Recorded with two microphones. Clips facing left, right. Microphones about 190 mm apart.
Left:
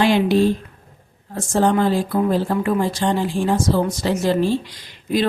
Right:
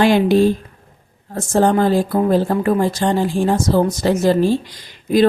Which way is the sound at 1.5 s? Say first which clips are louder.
Right 3 dB; 45° right (ahead or behind).